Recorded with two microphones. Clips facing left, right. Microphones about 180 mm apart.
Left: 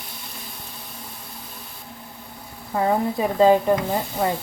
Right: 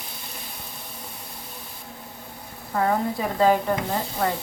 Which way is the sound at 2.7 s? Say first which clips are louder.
Left 2 dB; 20° left (ahead or behind).